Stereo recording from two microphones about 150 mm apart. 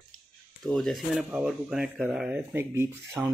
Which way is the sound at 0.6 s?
Centre (ahead or behind).